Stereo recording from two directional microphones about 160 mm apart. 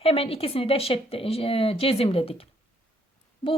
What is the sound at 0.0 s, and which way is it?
A woman's voice, 35° left (ahead or behind).